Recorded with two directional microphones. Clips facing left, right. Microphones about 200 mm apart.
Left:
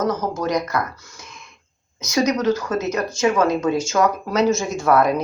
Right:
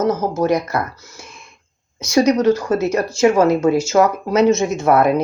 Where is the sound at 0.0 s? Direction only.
25° right (ahead or behind).